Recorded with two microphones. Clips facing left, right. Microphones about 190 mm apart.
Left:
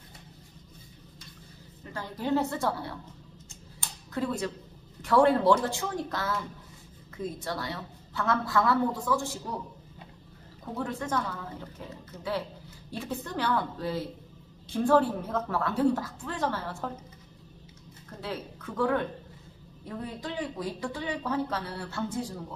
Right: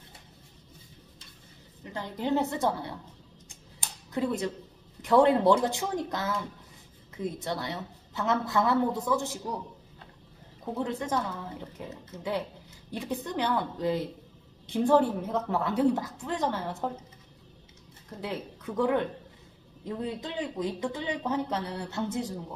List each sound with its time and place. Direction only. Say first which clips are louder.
2.0 s speech: even; 20° right (ahead or behind)
4.1 s speech: right 2 dB; 20° right (ahead or behind)
7.3 s speech: right 1 dB; 20° right (ahead or behind)
10.8 s a woman's voice: right 1 dB; 20° right (ahead or behind)
18.2 s a woman's voice: right 1 dB; 20° right (ahead or behind)